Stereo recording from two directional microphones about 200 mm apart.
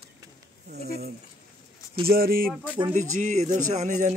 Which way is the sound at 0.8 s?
50° right (ahead or behind).